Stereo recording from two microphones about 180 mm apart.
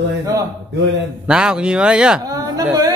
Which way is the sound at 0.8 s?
75° right (ahead or behind).